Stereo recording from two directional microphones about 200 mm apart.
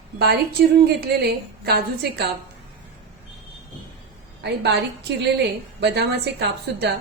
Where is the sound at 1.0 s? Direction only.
50° right (ahead or behind).